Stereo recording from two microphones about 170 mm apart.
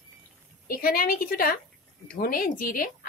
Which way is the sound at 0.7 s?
60° left (ahead or behind).